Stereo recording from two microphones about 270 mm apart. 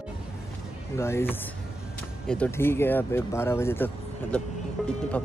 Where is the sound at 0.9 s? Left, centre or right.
Centre.